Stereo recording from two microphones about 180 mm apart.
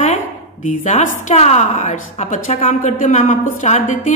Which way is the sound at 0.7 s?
45° left (ahead or behind).